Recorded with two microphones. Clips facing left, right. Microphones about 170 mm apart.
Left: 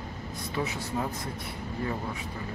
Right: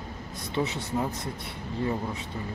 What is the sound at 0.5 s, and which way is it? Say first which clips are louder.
Speech: right 3 dB; 25° right (ahead or behind).